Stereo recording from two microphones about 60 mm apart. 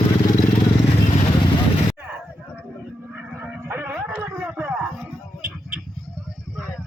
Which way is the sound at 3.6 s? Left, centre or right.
Right.